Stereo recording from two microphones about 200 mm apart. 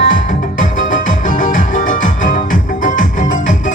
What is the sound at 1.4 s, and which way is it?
Music, 40° left (ahead or behind).